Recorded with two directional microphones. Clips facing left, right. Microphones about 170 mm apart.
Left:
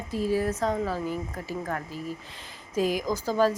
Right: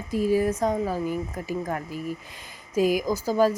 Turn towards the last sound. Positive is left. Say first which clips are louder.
# right 2 dB
turn(degrees=-10)  # may be behind; listen again after turning